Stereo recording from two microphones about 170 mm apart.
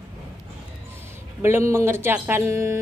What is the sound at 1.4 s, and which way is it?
Speech, 15° right (ahead or behind).